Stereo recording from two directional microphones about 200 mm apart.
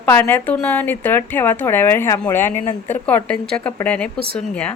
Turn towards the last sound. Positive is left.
turn(degrees=5)  # may be behind; listen again after turning